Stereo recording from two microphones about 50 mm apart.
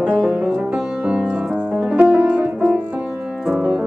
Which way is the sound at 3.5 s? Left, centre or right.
Centre.